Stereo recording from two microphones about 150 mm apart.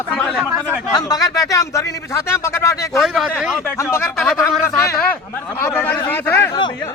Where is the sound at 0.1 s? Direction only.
Centre (ahead or behind).